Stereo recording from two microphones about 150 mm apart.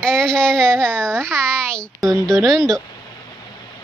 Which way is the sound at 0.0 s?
5° left (ahead or behind).